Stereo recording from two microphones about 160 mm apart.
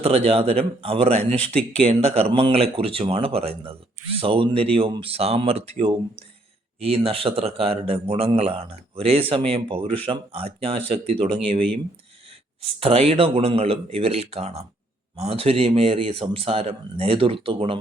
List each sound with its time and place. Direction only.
0.0 s a man's voice: 40° right (ahead or behind)
6.7 s a man's voice: 40° right (ahead or behind)
12.8 s a man's voice: 35° right (ahead or behind)